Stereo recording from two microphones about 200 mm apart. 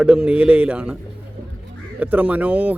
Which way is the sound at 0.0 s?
5° right (ahead or behind).